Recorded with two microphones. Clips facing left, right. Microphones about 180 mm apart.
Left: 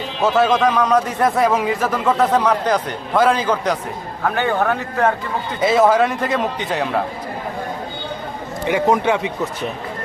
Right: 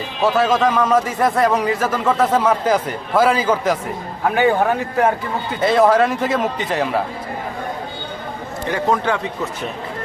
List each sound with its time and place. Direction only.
0.2 s a man's voice: centre (ahead or behind)
5.5 s a man's voice: centre (ahead or behind)
8.6 s a man's voice: 15° left (ahead or behind)